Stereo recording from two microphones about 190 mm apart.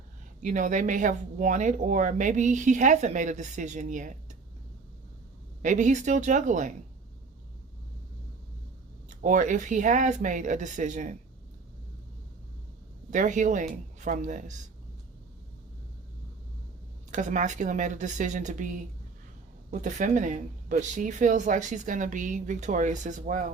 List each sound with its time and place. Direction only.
0.4 s speech: 40° right (ahead or behind)
5.6 s speech: 40° right (ahead or behind)
9.0 s speech: 40° right (ahead or behind)
13.1 s speech: 40° right (ahead or behind)
17.1 s speech: 40° right (ahead or behind)
19.8 s speech: 40° right (ahead or behind)